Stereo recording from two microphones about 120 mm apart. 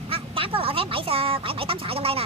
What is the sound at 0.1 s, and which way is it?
Speech, 50° right (ahead or behind).